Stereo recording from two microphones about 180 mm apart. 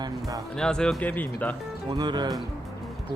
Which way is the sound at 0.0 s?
20° right (ahead or behind).